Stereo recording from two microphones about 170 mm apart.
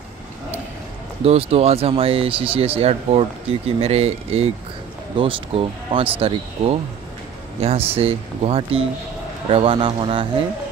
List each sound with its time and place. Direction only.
1.2 s speech: 35° right (ahead or behind)